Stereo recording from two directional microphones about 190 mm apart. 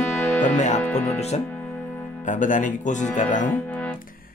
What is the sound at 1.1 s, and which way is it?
Speech, 35° left (ahead or behind).